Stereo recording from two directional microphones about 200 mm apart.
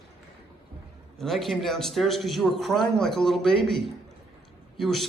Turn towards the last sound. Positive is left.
turn(degrees=0)  # may be behind; listen again after turning